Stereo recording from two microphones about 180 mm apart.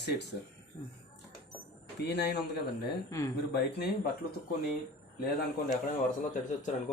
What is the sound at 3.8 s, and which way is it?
Speech, 60° left (ahead or behind).